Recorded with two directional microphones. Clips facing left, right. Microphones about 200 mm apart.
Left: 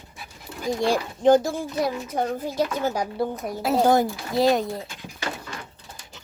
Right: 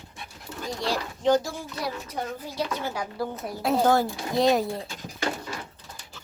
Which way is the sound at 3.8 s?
15° left (ahead or behind).